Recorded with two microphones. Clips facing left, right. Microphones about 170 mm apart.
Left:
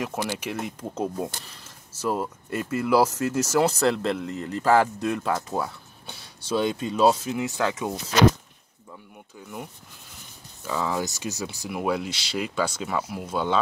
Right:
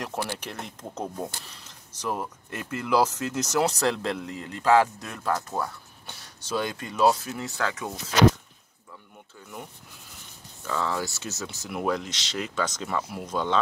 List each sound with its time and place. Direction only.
0.4 s speech: 10° left (ahead or behind)
6.5 s speech: 20° left (ahead or behind)
10.6 s speech: 10° left (ahead or behind)